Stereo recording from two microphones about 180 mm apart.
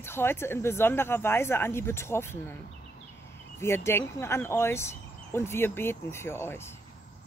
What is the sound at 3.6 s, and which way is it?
Speech, 15° left (ahead or behind).